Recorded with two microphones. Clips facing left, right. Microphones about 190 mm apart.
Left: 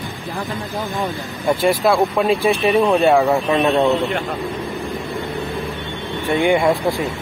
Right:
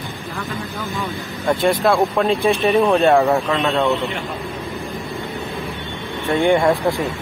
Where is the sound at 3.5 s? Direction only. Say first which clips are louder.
Left 3 dB; 20° left (ahead or behind).